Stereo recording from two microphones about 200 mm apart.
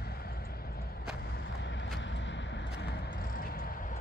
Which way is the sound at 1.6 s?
65° left (ahead or behind).